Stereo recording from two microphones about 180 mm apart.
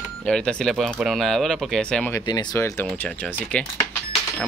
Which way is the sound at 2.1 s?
20° left (ahead or behind).